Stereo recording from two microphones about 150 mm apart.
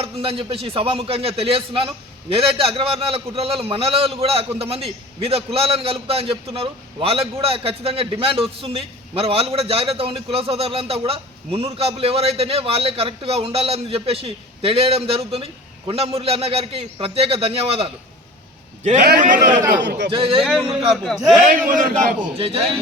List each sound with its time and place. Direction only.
0.0 s a man's voice: 40° right (ahead or behind)
19.0 s a man's voice: 70° right (ahead or behind)
20.1 s a man's voice: 35° right (ahead or behind)
20.4 s speech: centre (ahead or behind)
21.3 s a man's voice: 65° right (ahead or behind)
22.4 s a man's voice: 40° right (ahead or behind)